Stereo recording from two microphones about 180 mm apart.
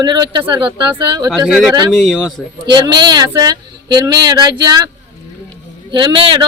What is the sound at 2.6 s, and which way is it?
Speech, 25° right (ahead or behind).